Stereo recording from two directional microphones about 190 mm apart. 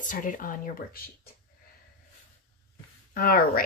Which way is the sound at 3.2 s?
50° left (ahead or behind).